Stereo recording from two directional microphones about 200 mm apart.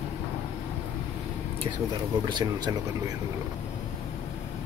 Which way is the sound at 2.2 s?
20° right (ahead or behind).